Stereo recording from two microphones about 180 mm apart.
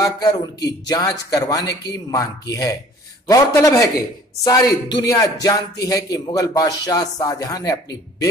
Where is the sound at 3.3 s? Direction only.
15° left (ahead or behind).